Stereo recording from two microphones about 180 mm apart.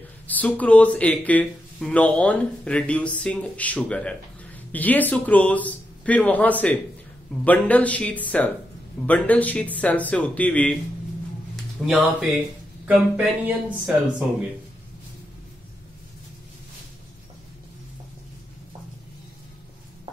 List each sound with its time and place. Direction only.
0.3 s speech: 10° left (ahead or behind)